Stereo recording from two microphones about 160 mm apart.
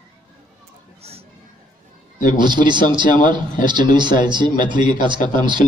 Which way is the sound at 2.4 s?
30° right (ahead or behind).